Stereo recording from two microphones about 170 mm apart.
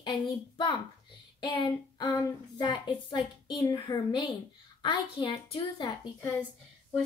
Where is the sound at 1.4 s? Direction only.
25° left (ahead or behind).